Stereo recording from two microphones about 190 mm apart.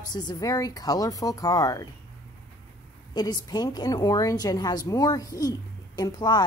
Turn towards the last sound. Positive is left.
turn(degrees=20)  # may be behind; listen again after turning